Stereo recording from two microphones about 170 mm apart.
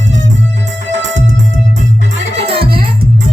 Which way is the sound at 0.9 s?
90° right.